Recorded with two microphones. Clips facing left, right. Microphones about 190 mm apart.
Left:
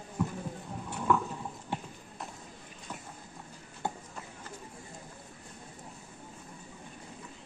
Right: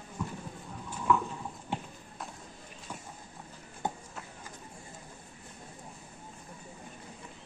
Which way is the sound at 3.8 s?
20° right (ahead or behind).